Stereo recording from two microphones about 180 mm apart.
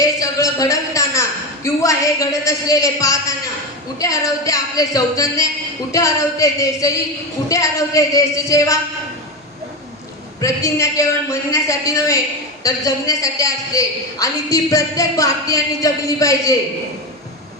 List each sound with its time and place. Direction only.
0.0 s a man's voice: 20° left (ahead or behind)
10.4 s a man's voice: 15° left (ahead or behind)